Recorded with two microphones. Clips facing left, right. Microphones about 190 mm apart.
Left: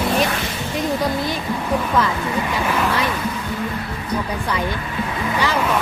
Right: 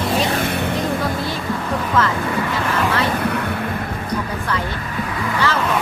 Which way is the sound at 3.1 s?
65° right (ahead or behind).